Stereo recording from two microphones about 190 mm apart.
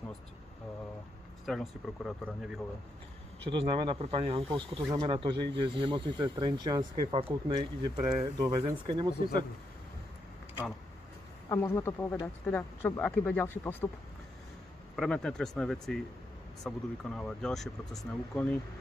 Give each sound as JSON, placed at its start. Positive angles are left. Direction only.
{"t": 1.4, "sound": "speech", "side_deg": 0}
{"t": 3.4, "sound": "speech", "side_deg": -25}
{"t": 11.4, "sound": "speech", "side_deg": 15}
{"t": 15.0, "sound": "speech", "side_deg": 5}